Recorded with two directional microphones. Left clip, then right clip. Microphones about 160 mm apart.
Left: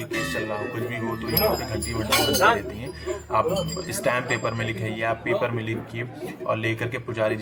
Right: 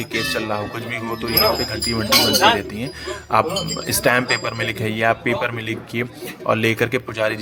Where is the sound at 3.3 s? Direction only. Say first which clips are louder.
Right 5 dB; 35° right (ahead or behind).